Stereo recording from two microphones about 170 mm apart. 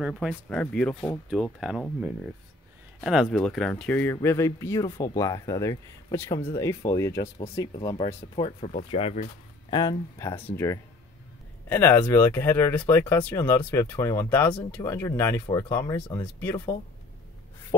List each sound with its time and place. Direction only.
0.0 s speech: centre (ahead or behind); by 9.3 s 40° left (ahead or behind)
9.7 s speech: 25° left (ahead or behind)